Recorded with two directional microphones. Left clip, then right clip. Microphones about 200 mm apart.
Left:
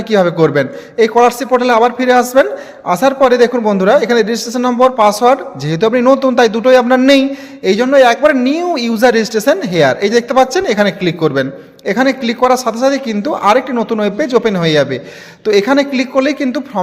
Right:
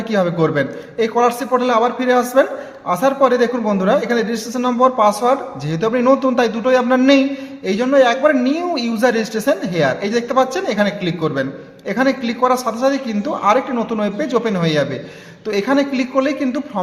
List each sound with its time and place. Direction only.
0.1 s a man's voice: 40° left (ahead or behind)